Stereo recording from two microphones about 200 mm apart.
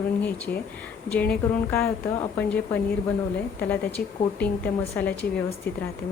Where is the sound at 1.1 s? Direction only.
5° left (ahead or behind).